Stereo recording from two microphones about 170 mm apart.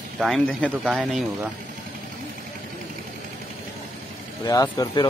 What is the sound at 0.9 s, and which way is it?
Speech, 5° right (ahead or behind).